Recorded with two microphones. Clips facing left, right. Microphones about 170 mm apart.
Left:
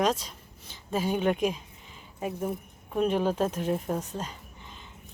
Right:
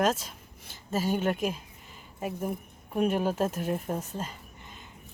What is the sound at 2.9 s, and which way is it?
Speech, 10° right (ahead or behind).